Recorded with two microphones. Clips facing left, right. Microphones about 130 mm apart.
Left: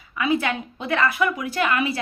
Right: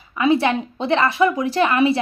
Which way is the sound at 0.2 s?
30° right (ahead or behind).